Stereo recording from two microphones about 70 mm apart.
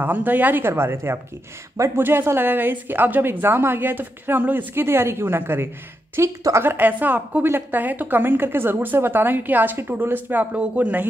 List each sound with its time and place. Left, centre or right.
0.0 s a woman's voice: right